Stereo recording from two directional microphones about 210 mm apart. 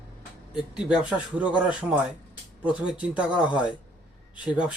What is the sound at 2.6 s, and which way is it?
Speech, 5° right (ahead or behind).